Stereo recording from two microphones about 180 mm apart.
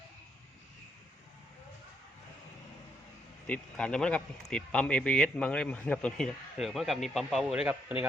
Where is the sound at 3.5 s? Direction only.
5° left (ahead or behind); by 8.1 s 10° right (ahead or behind).